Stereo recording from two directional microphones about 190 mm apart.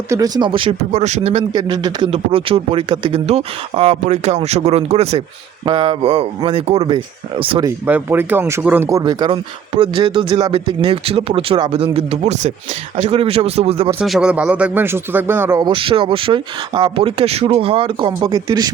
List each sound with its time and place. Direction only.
0.1 s speech: 20° right (ahead or behind)
1.5 s a man's voice: 20° right (ahead or behind)
7.6 s a man's voice: 10° right (ahead or behind); by 13.9 s 30° right (ahead or behind)
14.0 s speech: 5° right (ahead or behind); by 18.7 s 20° right (ahead or behind)